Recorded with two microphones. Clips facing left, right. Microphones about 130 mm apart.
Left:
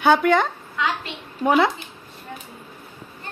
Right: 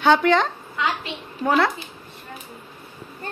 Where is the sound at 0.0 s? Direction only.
5° left (ahead or behind).